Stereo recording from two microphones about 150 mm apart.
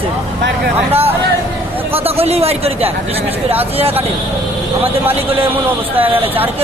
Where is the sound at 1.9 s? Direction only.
40° right (ahead or behind).